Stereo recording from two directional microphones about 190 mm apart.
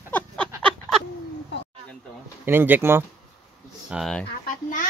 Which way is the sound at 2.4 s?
10° right (ahead or behind).